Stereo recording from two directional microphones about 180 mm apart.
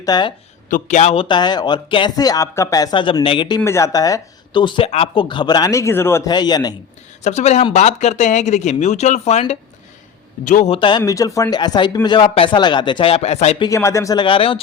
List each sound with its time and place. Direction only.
0.0 s a man's voice: 25° left (ahead or behind)
0.7 s a man's voice: 40° left (ahead or behind)
3.6 s a man's voice: 15° left (ahead or behind)
7.3 s speech: 40° left (ahead or behind)
10.8 s a man's voice: 25° left (ahead or behind)
13.6 s a man's voice: 15° left (ahead or behind)